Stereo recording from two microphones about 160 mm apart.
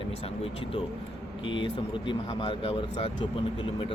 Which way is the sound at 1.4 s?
30° left (ahead or behind).